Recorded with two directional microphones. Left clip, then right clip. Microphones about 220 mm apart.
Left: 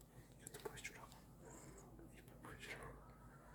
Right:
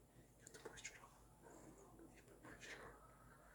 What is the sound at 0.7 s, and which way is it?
Whispering, 30° left (ahead or behind).